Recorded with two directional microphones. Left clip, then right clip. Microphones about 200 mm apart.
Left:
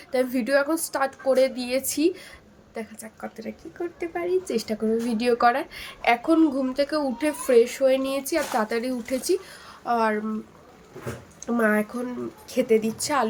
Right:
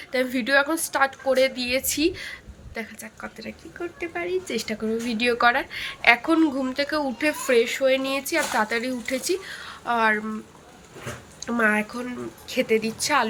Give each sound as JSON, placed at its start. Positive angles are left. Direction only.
{"t": 0.1, "sound": "a woman's voice", "side_deg": 15}
{"t": 11.4, "sound": "a woman's voice", "side_deg": 10}